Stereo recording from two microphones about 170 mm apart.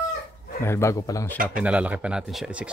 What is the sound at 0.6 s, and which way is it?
Speech, 15° left (ahead or behind).